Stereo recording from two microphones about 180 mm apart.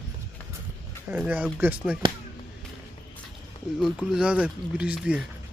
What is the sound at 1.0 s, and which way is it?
Speech, 10° right (ahead or behind).